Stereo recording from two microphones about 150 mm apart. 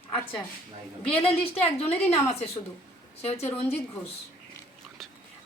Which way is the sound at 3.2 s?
45° left (ahead or behind).